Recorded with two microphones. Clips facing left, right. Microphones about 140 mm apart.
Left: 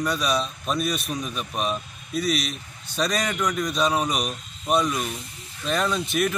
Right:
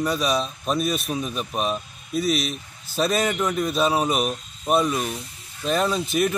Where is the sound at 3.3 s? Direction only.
25° right (ahead or behind).